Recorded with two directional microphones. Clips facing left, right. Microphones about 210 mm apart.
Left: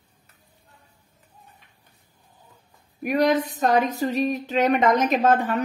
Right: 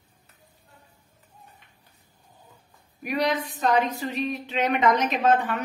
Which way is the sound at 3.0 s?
50° left (ahead or behind).